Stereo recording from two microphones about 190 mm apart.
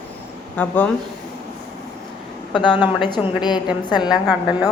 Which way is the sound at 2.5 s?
25° left (ahead or behind).